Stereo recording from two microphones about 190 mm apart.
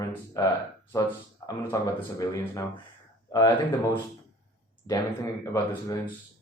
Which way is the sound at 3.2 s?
15° left (ahead or behind).